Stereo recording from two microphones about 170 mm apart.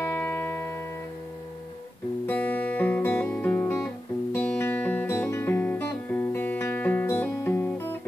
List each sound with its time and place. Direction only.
0.0 s music: 15° left (ahead or behind)
2.2 s guitar: 10° left (ahead or behind)